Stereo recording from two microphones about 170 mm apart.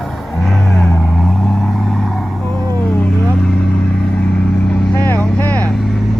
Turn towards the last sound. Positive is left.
turn(degrees=10)  # may be behind; listen again after turning